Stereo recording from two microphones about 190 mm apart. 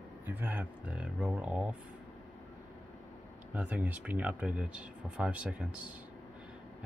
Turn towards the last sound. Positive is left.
turn(degrees=-5)  # may be behind; listen again after turning